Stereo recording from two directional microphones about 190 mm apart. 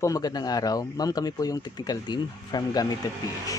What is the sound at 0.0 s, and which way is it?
Speech, 20° left (ahead or behind).